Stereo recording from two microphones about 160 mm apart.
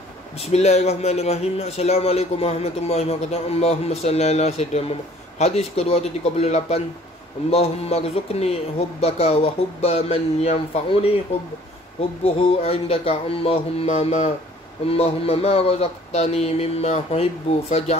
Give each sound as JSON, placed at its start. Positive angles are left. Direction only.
{"t": 0.4, "sound": "a man's voice", "side_deg": 40}
{"t": 12.2, "sound": "a man's voice", "side_deg": 40}